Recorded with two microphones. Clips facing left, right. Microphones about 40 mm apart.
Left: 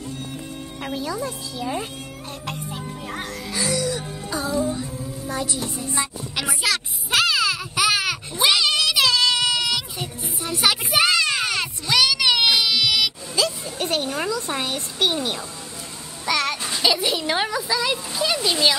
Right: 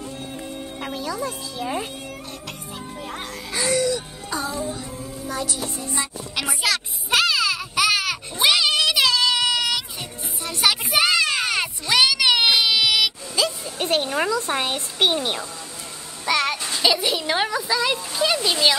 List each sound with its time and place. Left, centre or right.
0.7 s speech: centre
1.6 s speech: centre
3.5 s music: right
4.3 s music: centre
4.6 s music: centre
13.8 s a woman's voice: right
16.3 s a sound: centre
16.6 s speech: centre